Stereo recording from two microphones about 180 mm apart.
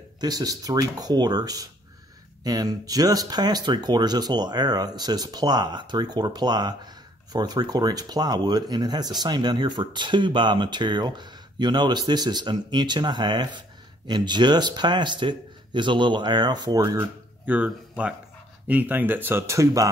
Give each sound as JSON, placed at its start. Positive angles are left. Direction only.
{"t": 0.2, "sound": "speech", "side_deg": -20}
{"t": 17.5, "sound": "speech", "side_deg": -5}